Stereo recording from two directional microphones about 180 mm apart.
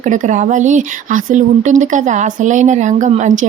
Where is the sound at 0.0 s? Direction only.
45° right (ahead or behind).